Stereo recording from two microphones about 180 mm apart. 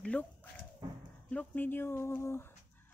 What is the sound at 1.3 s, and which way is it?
Speech, 10° left (ahead or behind).